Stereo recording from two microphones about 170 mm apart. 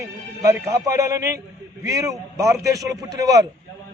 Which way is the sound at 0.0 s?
15° right (ahead or behind).